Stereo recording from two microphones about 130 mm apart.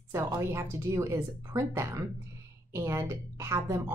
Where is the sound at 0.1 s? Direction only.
20° right (ahead or behind).